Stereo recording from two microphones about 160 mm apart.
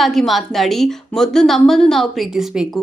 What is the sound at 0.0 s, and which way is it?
A woman's voice, centre (ahead or behind).